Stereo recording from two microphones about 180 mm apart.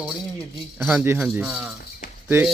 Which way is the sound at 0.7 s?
5° right (ahead or behind).